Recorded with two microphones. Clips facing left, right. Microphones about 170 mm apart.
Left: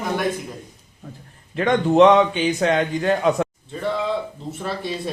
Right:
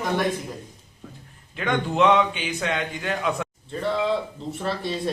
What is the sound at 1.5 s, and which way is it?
A man's voice, 40° left (ahead or behind).